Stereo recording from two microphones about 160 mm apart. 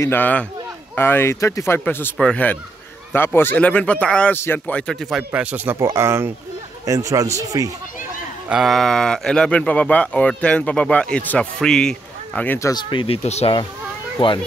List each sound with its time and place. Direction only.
0.0 s speech: 10° left (ahead or behind)
5.3 s speech: 10° right (ahead or behind)
8.5 s speech: centre (ahead or behind); by 12.8 s 20° left (ahead or behind)
12.9 s speech: 35° left (ahead or behind)